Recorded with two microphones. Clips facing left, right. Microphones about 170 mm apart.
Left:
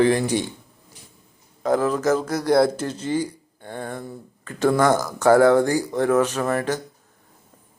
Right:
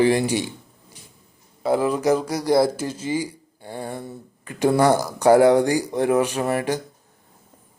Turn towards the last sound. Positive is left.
turn(degrees=-15)  # may be behind; listen again after turning